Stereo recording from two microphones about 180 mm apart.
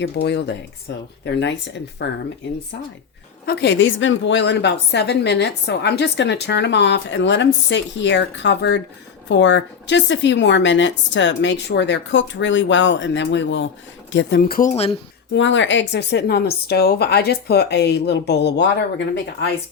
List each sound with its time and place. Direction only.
0.0 s a woman's voice: 70° left (ahead or behind)
3.4 s a woman's voice: 65° left (ahead or behind)
15.4 s a woman's voice: 90° left